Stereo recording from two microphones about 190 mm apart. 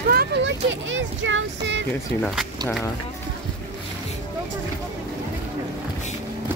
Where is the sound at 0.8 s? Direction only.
90° right; by 1.8 s 75° right (ahead or behind).